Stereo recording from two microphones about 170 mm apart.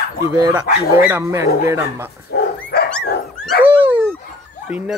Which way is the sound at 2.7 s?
70° left (ahead or behind).